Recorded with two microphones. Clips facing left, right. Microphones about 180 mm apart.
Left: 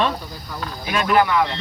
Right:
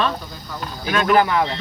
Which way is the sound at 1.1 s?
25° right (ahead or behind).